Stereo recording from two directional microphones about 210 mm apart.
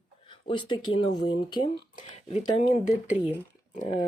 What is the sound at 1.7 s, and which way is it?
Speech, 35° left (ahead or behind).